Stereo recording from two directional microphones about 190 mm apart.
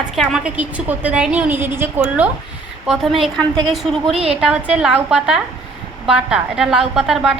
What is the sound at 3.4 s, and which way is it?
Speech, 25° right (ahead or behind).